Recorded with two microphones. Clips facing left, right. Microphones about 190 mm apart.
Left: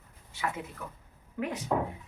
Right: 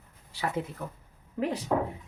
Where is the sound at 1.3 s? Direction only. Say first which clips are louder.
Right 4 dB; 35° right (ahead or behind).